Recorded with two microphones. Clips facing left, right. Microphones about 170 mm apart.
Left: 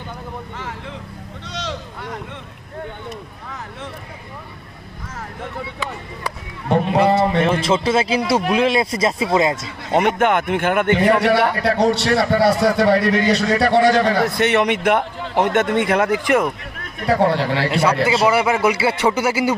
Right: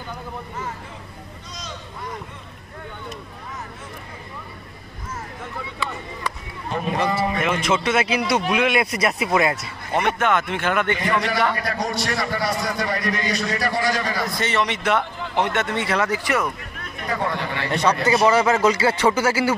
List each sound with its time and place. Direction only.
1.5 s sheep: 80° left
7.3 s a man's voice: 30° left (ahead or behind)
10.1 s a man's voice: 55° left (ahead or behind)
17.0 s speech: 75° left (ahead or behind)
18.0 s a man's voice: 10° left (ahead or behind)